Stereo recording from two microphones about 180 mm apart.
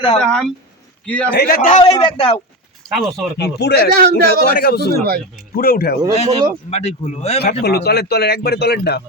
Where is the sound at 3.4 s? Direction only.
65° left (ahead or behind).